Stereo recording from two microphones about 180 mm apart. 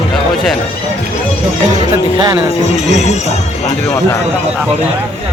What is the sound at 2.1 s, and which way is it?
Speech, 20° right (ahead or behind).